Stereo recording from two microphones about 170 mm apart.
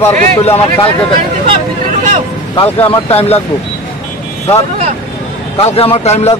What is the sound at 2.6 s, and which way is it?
Speech, 10° left (ahead or behind).